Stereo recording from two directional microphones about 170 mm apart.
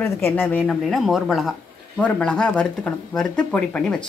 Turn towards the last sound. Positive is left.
turn(degrees=5)  # may be behind; listen again after turning